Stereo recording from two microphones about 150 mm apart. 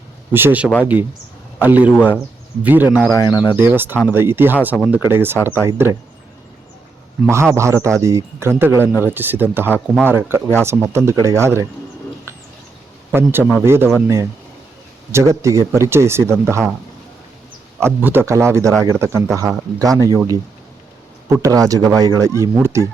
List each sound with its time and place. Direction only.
0.3 s a man's voice: 10° right (ahead or behind)
3.1 s speech: 20° left (ahead or behind)
3.5 s speech: 15° right (ahead or behind)
7.5 s speech: 20° right (ahead or behind)
13.1 s a man's voice: 10° right (ahead or behind)
15.1 s speech: 20° right (ahead or behind)
17.7 s speech: 15° right (ahead or behind)